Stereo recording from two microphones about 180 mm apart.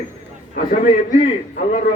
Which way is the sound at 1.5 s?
50° left (ahead or behind).